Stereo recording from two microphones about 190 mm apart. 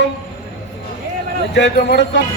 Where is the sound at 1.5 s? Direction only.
60° left (ahead or behind).